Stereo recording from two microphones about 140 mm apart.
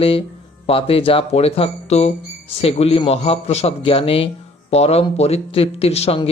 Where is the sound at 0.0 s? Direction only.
40° left (ahead or behind).